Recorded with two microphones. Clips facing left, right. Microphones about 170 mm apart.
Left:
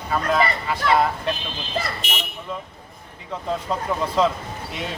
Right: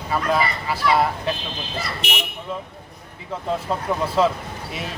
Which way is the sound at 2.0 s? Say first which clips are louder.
Right 2 dB; 65° right (ahead or behind).